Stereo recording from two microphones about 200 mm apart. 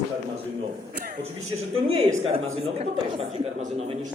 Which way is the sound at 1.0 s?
35° right (ahead or behind).